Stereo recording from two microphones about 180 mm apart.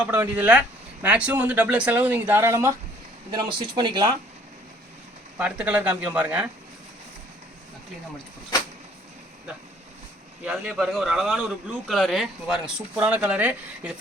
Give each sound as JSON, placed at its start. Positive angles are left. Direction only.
{"t": 0.0, "sound": "speech", "side_deg": -5}
{"t": 3.3, "sound": "speech", "side_deg": -25}
{"t": 5.4, "sound": "speech", "side_deg": -5}
{"t": 10.4, "sound": "a man's voice", "side_deg": 0}